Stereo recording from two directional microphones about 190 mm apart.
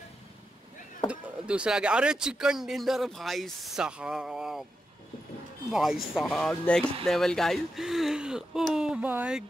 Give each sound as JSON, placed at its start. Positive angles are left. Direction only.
{"t": 1.0, "sound": "speech", "side_deg": -5}
{"t": 5.7, "sound": "speech", "side_deg": -5}